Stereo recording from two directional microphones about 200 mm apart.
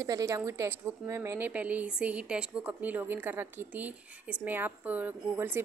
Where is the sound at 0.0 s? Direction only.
15° right (ahead or behind).